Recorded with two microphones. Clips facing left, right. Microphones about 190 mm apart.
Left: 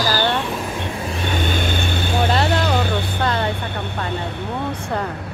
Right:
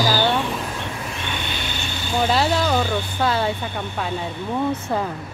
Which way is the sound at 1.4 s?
50° left (ahead or behind).